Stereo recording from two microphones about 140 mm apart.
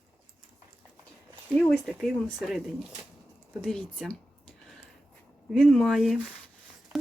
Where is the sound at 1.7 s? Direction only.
5° right (ahead or behind).